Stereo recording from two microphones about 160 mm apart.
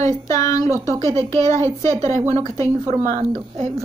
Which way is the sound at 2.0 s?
45° right (ahead or behind).